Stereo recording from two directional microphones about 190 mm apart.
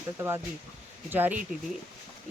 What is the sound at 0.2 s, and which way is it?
Speech, 10° right (ahead or behind).